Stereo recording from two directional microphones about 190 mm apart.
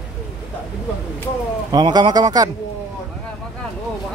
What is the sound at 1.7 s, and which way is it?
Speech, 20° right (ahead or behind).